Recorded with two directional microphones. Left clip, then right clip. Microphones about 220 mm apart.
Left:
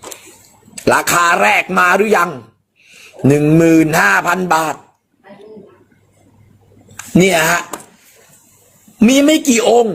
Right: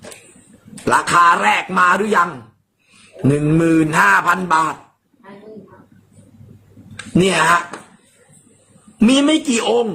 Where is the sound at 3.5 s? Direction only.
15° left (ahead or behind).